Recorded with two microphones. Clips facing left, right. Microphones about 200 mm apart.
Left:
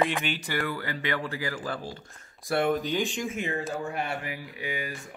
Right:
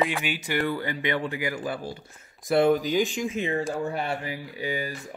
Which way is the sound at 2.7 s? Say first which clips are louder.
Right 4 dB; centre (ahead or behind).